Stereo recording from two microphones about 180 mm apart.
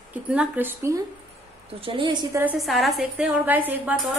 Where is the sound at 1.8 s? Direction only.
25° right (ahead or behind).